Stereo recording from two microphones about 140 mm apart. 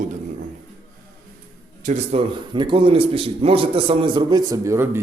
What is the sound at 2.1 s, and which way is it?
A man's voice, 35° right (ahead or behind).